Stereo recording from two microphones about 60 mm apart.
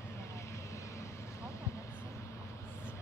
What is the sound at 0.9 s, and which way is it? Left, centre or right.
Vehicle, left.